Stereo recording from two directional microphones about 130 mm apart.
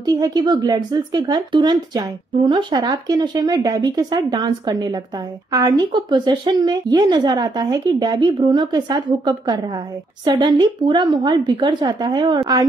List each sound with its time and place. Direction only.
0.0 s a woman's voice: 30° right (ahead or behind)